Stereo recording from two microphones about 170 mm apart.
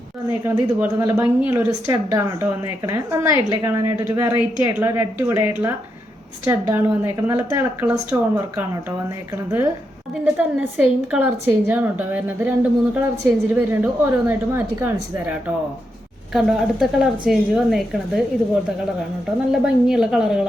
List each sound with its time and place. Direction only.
0.4 s a woman's voice: 15° right (ahead or behind)
16.3 s a woman's voice: centre (ahead or behind)
19.6 s a woman's voice: 5° right (ahead or behind)